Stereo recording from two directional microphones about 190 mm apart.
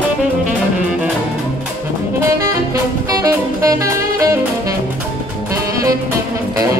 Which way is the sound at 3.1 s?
20° right (ahead or behind).